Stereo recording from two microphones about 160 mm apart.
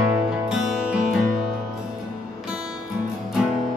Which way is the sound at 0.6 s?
5° right (ahead or behind).